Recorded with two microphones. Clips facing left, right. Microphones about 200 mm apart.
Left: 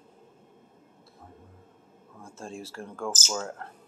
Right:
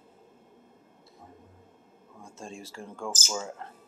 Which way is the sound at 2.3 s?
Centre (ahead or behind).